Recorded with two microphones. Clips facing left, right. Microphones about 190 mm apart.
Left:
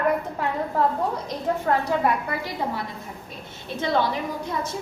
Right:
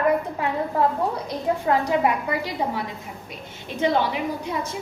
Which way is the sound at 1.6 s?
10° right (ahead or behind).